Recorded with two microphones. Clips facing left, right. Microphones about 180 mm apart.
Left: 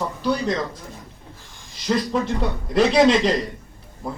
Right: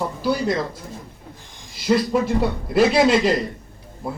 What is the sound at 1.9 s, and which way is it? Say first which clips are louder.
A man's voice: right 3 dB; 5° right (ahead or behind).